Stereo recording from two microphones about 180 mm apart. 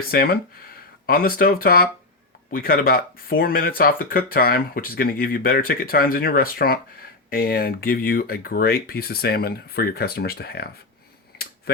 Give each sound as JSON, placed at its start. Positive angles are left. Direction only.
{"t": 0.1, "sound": "speech", "side_deg": 55}